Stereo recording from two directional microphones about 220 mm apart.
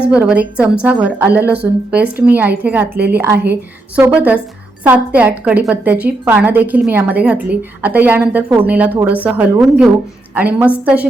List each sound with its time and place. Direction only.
0.1 s a woman's voice: 5° right (ahead or behind)
3.3 s a woman's voice: 45° right (ahead or behind)
3.9 s a woman's voice: 5° right (ahead or behind)